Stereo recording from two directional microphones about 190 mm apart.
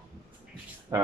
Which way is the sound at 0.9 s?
15° right (ahead or behind).